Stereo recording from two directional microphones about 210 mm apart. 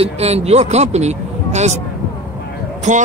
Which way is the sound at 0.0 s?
30° right (ahead or behind).